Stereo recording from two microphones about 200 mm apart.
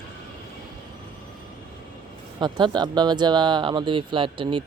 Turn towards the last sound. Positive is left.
turn(degrees=-25)  # may be behind; listen again after turning